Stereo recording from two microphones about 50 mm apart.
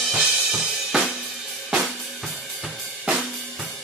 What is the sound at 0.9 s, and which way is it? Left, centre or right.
Drum kit, centre.